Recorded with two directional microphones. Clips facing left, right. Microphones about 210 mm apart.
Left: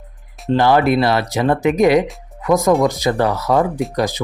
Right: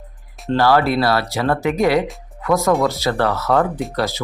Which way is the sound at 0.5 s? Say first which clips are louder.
Left 2 dB; 20° left (ahead or behind).